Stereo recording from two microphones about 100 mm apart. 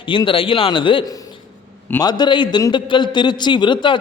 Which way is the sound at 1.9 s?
45° left (ahead or behind).